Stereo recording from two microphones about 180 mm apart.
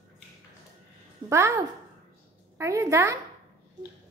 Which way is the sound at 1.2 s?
15° right (ahead or behind).